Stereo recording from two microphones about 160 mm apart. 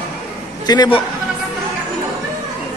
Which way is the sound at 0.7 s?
30° left (ahead or behind).